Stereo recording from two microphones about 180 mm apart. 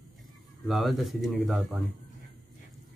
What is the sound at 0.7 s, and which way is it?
Speech, centre (ahead or behind).